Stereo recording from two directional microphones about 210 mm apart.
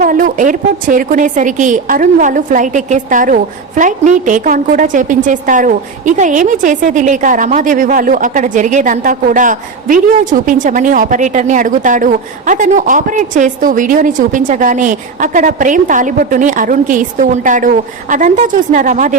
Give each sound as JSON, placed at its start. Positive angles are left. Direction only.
{"t": 0.0, "sound": "a woman's voice", "side_deg": -40}